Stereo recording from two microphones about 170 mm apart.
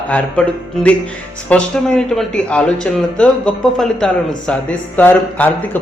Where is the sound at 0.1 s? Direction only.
10° left (ahead or behind).